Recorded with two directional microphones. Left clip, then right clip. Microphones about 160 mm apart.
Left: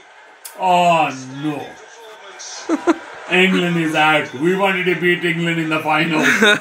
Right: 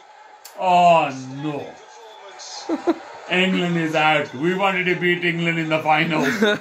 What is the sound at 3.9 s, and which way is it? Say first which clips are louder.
Speech: left 3 dB; 30° right (ahead or behind).